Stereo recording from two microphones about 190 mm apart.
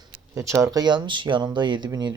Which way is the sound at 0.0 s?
15° right (ahead or behind).